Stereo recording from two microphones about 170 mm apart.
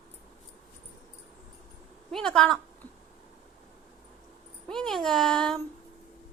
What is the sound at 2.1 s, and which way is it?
Speech, 5° left (ahead or behind).